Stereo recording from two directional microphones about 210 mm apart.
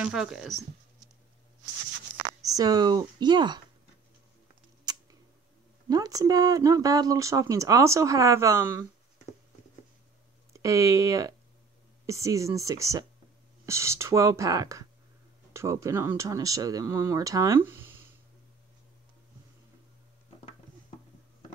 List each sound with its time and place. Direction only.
0.0 s speech: 5° right (ahead or behind)
2.4 s speech: 15° right (ahead or behind)
4.9 s scissors: 20° right (ahead or behind)
5.9 s speech: 15° right (ahead or behind)
10.5 s speech: 15° right (ahead or behind)